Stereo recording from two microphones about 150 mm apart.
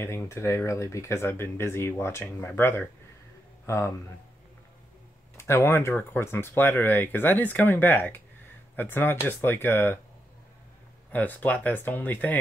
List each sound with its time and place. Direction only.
0.0 s speech: 15° left (ahead or behind)
5.4 s speech: 15° left (ahead or behind)
11.1 s speech: 10° left (ahead or behind)